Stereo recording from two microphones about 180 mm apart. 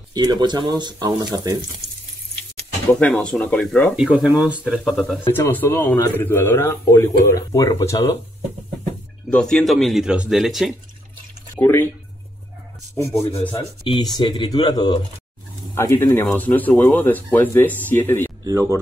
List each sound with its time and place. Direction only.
0.1 s speech: 20° right (ahead or behind)
2.9 s a man's voice: 10° left (ahead or behind)
3.9 s speech: 5° right (ahead or behind)
5.2 s a man's voice: 10° left (ahead or behind)
9.3 s speech: 5° left (ahead or behind)
11.6 s a man's voice: 10° left (ahead or behind)
12.9 s a man's voice: 10° left (ahead or behind)
13.8 s a man's voice: 25° left (ahead or behind)
18.4 s speech: 15° right (ahead or behind)